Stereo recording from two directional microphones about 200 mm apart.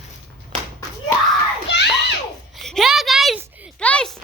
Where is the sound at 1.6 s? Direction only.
60° left (ahead or behind).